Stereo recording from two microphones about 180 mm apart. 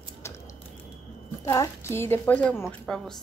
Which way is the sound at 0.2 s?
15° left (ahead or behind).